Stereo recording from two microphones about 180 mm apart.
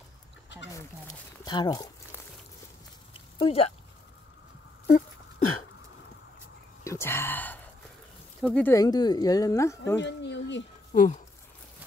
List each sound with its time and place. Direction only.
0.7 s speech: 15° left (ahead or behind)
3.1 s a sound: 30° left (ahead or behind)
6.8 s a sound: 15° left (ahead or behind)
8.4 s speech: 5° left (ahead or behind)
8.7 s speech: 20° left (ahead or behind)
9.9 s speech: 75° left (ahead or behind)
10.9 s speech: 45° left (ahead or behind)